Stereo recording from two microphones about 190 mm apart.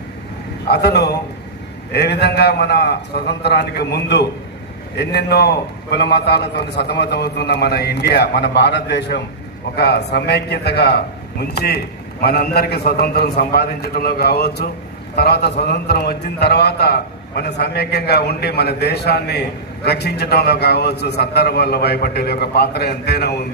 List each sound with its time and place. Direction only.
0.7 s a man's voice: 60° left (ahead or behind)